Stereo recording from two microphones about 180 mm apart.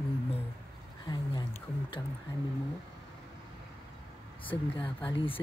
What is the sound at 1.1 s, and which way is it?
Speech, 20° left (ahead or behind).